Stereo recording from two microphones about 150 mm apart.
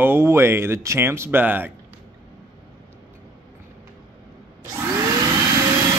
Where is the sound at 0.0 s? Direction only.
15° right (ahead or behind).